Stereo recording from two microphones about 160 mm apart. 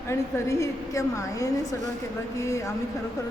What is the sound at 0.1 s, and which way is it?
A woman's voice, 15° left (ahead or behind).